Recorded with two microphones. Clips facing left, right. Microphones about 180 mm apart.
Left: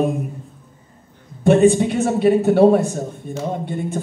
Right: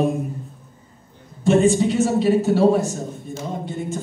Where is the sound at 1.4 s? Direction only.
60° left (ahead or behind).